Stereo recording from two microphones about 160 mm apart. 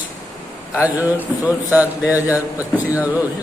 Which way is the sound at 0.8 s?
10° right (ahead or behind).